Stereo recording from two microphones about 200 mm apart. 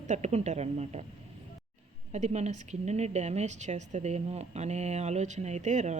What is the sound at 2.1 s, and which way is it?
A woman's voice, 35° right (ahead or behind).